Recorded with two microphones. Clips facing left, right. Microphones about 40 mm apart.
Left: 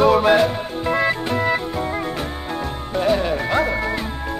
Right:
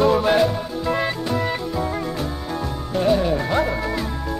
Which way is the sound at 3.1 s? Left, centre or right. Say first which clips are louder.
Even; left.